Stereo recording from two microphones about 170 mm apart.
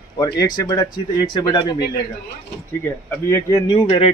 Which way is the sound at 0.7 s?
25° left (ahead or behind).